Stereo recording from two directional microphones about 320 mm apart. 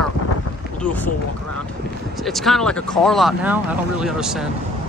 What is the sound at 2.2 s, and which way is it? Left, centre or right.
Speech, centre.